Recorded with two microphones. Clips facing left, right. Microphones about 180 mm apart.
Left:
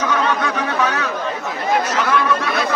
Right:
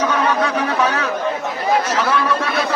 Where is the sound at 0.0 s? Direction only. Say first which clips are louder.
Right 2 dB; 30° right (ahead or behind).